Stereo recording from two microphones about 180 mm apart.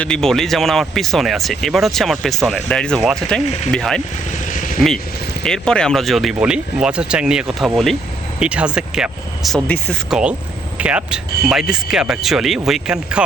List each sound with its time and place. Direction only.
0.0 s speech: 5° left (ahead or behind)
4.5 s vehicle: 45° left (ahead or behind)
5.4 s speech: 5° left (ahead or behind)